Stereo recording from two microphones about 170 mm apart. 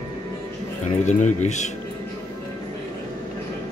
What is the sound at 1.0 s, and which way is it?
Speech, 45° left (ahead or behind).